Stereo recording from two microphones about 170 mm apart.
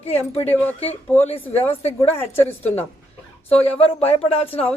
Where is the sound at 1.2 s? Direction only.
35° left (ahead or behind).